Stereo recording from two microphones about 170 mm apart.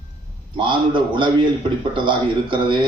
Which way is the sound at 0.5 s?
30° right (ahead or behind).